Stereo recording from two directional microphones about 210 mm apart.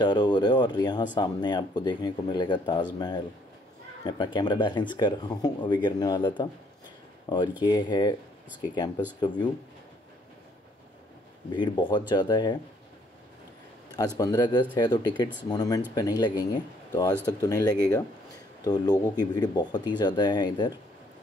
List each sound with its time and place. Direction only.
0.0 s speech: 20° left (ahead or behind)
4.0 s speech: 20° left (ahead or behind)
11.5 s speech: 20° left (ahead or behind)
13.9 s speech: 15° left (ahead or behind)